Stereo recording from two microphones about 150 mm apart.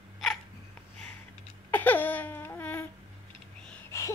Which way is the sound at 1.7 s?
10° left (ahead or behind).